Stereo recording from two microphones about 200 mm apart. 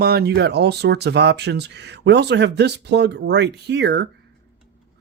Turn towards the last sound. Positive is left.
turn(degrees=-60)  # may be behind; listen again after turning